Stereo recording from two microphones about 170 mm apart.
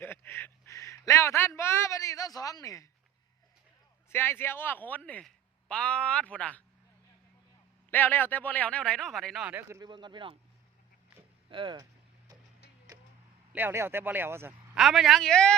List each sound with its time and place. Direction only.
0.0 s a sound: 15° left (ahead or behind)
4.1 s speech: 15° left (ahead or behind)
7.9 s speech: 10° left (ahead or behind); by 10.3 s 30° right (ahead or behind)
11.4 s speech: 30° right (ahead or behind)
13.5 s speech: 10° right (ahead or behind)
14.8 s speech: centre (ahead or behind)